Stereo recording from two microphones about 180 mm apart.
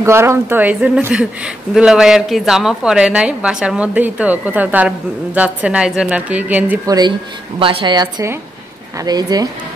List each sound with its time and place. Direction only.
0.0 s speech: 15° right (ahead or behind)
6.9 s speech: 25° right (ahead or behind)